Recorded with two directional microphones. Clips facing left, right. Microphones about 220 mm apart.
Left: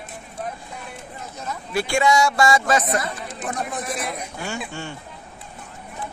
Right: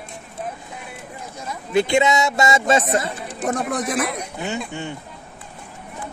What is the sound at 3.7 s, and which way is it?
Speech, 90° right.